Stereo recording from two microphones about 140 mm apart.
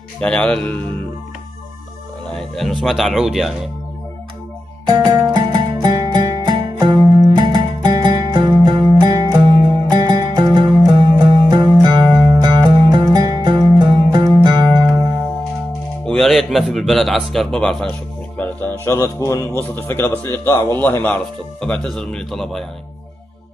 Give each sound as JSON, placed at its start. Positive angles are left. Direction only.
{"t": 0.2, "sound": "a man's voice", "side_deg": 10}
{"t": 2.3, "sound": "a man's voice", "side_deg": 0}
{"t": 4.8, "sound": "music", "side_deg": -30}
{"t": 16.1, "sound": "a man's voice", "side_deg": 0}